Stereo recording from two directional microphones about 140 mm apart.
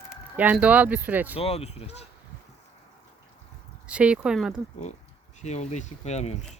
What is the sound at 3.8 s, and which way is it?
Speech, 10° right (ahead or behind).